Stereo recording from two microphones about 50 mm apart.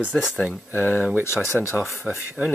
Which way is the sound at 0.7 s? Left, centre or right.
Left.